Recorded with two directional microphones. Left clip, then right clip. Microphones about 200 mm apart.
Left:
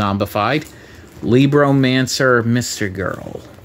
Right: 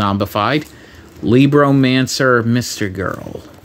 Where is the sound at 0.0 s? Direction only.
10° right (ahead or behind).